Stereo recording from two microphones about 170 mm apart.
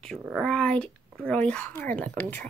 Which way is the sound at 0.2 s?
5° right (ahead or behind).